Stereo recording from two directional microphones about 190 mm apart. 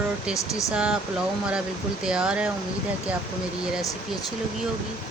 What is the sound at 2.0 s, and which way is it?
Speech, 5° right (ahead or behind).